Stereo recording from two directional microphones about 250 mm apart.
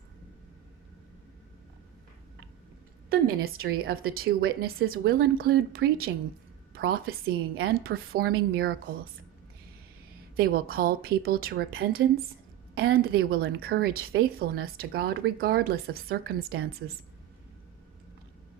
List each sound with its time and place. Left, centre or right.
3.1 s a woman's voice: right
10.3 s a woman's voice: right
16.4 s a woman's voice: right